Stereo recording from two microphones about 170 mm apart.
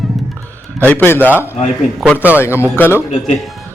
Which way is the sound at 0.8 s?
10° left (ahead or behind).